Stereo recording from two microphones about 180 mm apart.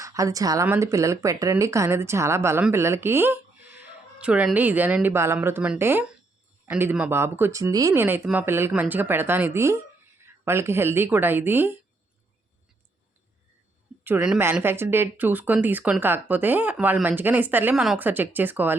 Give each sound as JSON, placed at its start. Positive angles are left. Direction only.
{"t": 0.0, "sound": "speech", "side_deg": -20}
{"t": 14.0, "sound": "speech", "side_deg": -10}